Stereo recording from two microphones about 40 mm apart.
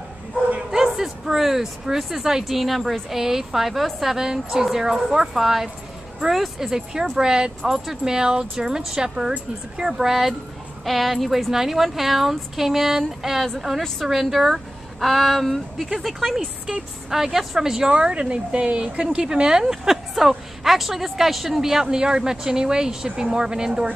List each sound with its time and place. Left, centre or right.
0.9 s speech: centre
7.6 s speech: centre